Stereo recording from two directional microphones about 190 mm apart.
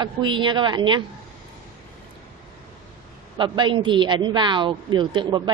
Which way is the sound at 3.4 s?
25° right (ahead or behind).